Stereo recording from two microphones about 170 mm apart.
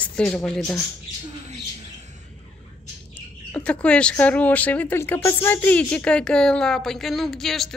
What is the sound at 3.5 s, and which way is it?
Speech, 5° left (ahead or behind).